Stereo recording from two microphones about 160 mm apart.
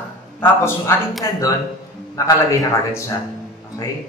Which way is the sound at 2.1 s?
20° left (ahead or behind).